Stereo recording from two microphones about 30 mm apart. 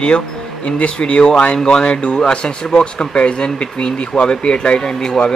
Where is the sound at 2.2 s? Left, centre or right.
Left.